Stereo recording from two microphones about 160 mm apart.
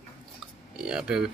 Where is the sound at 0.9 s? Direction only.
5° right (ahead or behind).